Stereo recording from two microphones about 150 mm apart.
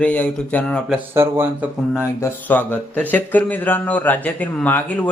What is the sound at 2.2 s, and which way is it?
Speech, 10° left (ahead or behind).